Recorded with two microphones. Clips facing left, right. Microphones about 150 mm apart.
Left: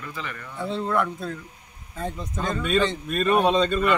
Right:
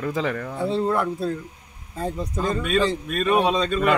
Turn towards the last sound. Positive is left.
turn(degrees=0)  # may be behind; listen again after turning